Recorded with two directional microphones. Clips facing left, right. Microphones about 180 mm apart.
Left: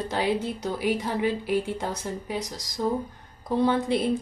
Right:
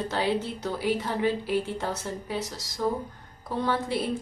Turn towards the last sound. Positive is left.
turn(degrees=20)  # may be behind; listen again after turning